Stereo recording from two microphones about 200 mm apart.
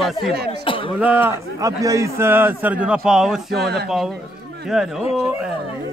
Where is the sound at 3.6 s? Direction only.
55° right (ahead or behind).